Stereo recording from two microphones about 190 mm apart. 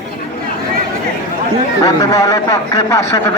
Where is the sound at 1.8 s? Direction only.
15° left (ahead or behind).